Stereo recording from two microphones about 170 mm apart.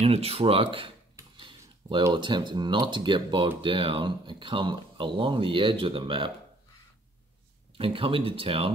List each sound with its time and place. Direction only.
0.0 s speech: 35° right (ahead or behind)
2.0 s speech: 30° right (ahead or behind)
7.7 s speech: 30° right (ahead or behind)